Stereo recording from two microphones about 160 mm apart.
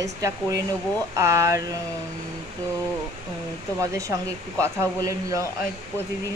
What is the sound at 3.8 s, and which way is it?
Speech, 20° right (ahead or behind).